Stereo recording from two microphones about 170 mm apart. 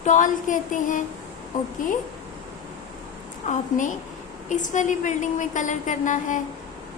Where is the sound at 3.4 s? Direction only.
45° left (ahead or behind).